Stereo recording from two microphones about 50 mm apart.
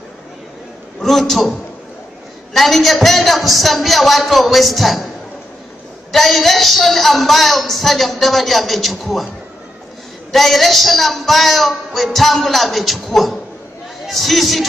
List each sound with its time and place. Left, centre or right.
1.0 s a man's voice: centre
6.1 s a man's voice: centre
10.3 s a man's voice: centre